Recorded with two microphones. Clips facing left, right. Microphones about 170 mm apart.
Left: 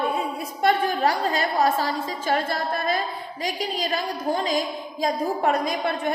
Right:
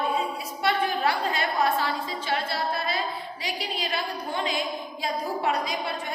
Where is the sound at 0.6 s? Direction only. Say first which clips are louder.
Left 4 dB; 40° left (ahead or behind).